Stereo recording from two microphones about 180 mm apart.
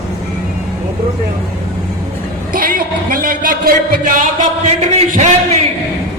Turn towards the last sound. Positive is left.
turn(degrees=-40)  # may be behind; listen again after turning